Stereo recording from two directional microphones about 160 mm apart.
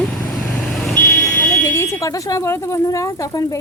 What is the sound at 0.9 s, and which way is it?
Smoke detector, 10° left (ahead or behind).